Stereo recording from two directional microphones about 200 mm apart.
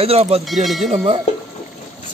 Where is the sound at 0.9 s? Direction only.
35° right (ahead or behind).